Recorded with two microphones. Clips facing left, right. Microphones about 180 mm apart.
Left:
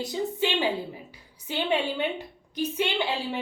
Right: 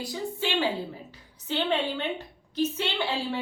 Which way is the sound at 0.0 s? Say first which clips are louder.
Left 4 dB; 20° left (ahead or behind).